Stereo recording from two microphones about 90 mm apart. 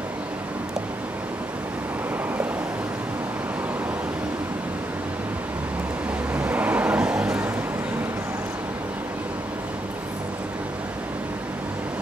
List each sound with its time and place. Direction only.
6.3 s vehicle: 15° right (ahead or behind)